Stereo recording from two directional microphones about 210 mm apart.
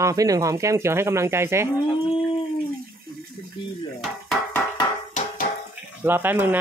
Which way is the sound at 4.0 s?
Centre (ahead or behind).